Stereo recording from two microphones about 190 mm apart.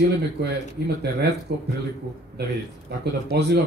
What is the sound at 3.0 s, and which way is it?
Speech, 60° right (ahead or behind).